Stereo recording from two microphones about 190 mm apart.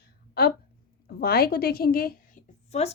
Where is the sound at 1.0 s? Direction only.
55° left (ahead or behind).